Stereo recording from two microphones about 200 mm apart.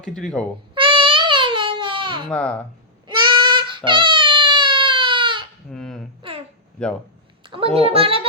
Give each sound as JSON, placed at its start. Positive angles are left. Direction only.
{"t": 0.1, "sound": "speech", "side_deg": 5}
{"t": 0.7, "sound": "baby cry", "side_deg": -25}
{"t": 2.3, "sound": "speech", "side_deg": 5}
{"t": 3.1, "sound": "a sound", "side_deg": -25}
{"t": 5.7, "sound": "a sound", "side_deg": 0}
{"t": 7.4, "sound": "a child's voice", "side_deg": -25}